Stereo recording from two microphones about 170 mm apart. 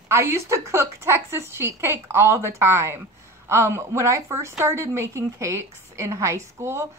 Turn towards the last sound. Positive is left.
turn(degrees=-15)  # may be behind; listen again after turning